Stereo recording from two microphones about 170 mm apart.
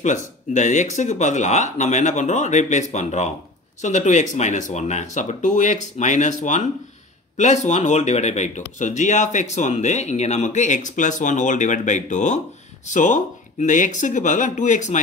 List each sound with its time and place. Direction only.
0.0 s speech: 45° left (ahead or behind)